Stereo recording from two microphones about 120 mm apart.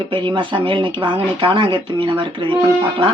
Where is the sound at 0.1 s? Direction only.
40° right (ahead or behind).